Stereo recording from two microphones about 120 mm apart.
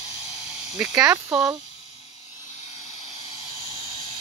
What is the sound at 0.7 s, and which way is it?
Speech, 10° right (ahead or behind).